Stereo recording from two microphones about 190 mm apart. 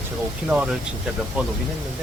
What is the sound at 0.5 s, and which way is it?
Speech, 5° right (ahead or behind).